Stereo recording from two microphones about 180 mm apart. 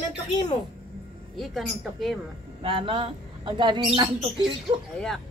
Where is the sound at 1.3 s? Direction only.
Centre (ahead or behind).